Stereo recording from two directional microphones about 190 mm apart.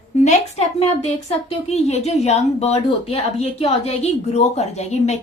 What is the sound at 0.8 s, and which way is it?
A woman's voice, 35° left (ahead or behind).